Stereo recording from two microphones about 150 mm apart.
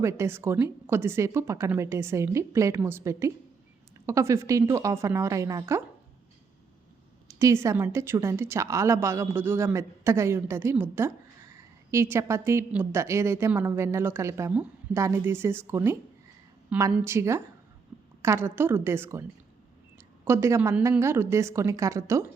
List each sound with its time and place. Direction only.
0.0 s a woman's voice: 20° right (ahead or behind)
7.3 s a woman's voice: 20° right (ahead or behind)
20.2 s a woman's voice: 20° right (ahead or behind)